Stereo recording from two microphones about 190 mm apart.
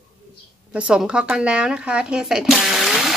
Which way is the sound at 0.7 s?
5° right (ahead or behind).